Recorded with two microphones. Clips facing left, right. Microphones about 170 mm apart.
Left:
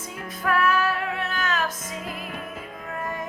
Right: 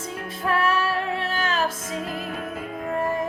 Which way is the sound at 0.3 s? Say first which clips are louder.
Even; 30° right (ahead or behind).